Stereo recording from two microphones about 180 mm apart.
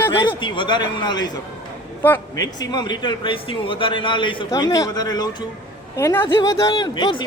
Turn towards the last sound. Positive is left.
turn(degrees=25)  # may be behind; listen again after turning